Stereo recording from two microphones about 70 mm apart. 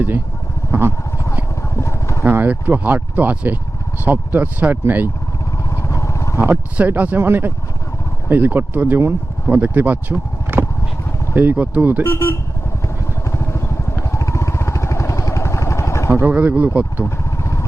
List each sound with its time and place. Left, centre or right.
0.7 s speech: right
1.7 s vehicle: left
2.2 s speech: right
5.7 s vehicle: left
6.7 s speech: right
12.0 s speech: left
13.3 s vehicle: left
16.2 s speech: right
17.0 s vehicle: left